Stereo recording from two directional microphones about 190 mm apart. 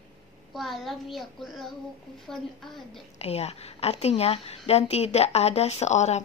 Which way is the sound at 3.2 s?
35° left (ahead or behind).